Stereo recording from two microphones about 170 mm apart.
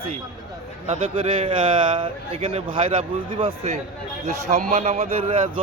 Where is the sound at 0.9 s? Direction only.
40° right (ahead or behind).